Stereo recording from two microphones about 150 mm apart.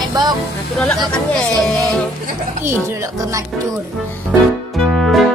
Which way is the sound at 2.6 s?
15° right (ahead or behind).